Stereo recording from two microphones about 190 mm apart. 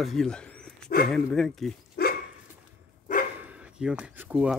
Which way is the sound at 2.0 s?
55° left (ahead or behind).